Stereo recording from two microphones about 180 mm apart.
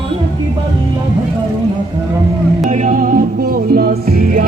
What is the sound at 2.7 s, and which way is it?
Music, 45° right (ahead or behind).